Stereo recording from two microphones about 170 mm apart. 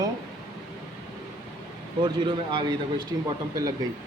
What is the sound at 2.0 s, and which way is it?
Speech, 25° right (ahead or behind).